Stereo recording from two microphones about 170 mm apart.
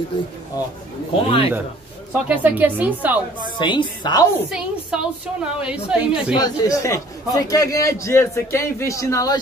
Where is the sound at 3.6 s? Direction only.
30° left (ahead or behind).